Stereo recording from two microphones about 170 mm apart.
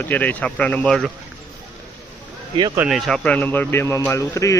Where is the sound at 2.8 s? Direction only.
Centre (ahead or behind); by 4.6 s 20° left (ahead or behind).